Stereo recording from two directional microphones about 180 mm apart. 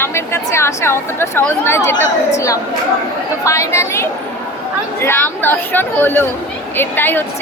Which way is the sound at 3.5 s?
15° left (ahead or behind).